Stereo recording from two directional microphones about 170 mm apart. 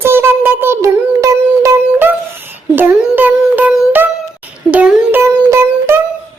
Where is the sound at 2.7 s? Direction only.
10° right (ahead or behind).